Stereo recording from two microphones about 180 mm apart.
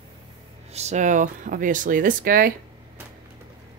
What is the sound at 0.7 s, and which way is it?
Speech, 40° right (ahead or behind).